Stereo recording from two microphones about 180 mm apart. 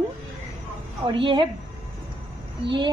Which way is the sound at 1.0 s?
25° right (ahead or behind).